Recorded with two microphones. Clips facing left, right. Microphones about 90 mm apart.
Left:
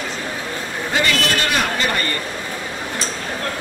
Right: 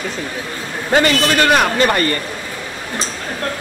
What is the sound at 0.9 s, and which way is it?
A man's voice, 50° right (ahead or behind).